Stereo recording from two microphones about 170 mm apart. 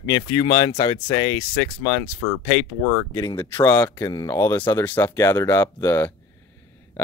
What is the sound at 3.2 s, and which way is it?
Speech, 15° left (ahead or behind).